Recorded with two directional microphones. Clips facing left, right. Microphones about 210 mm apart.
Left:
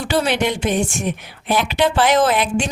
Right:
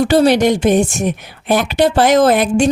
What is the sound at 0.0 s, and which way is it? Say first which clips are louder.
Speech: right 8 dB; 40° right (ahead or behind).